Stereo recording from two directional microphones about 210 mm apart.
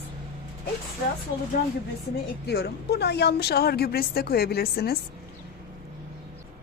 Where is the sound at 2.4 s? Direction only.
50° left (ahead or behind).